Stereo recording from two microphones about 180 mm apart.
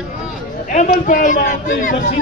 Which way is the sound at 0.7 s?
45° left (ahead or behind).